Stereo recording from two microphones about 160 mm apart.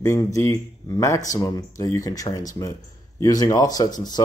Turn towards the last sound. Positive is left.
turn(degrees=25)  # may be behind; listen again after turning